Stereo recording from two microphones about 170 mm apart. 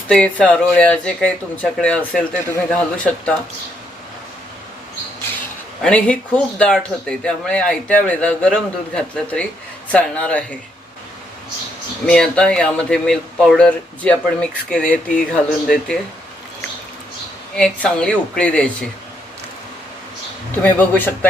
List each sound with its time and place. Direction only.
0.1 s speech: 5° left (ahead or behind)
5.8 s speech: 5° left (ahead or behind)
12.0 s speech: 5° left (ahead or behind)
17.6 s speech: 5° left (ahead or behind)
20.6 s speech: 10° left (ahead or behind)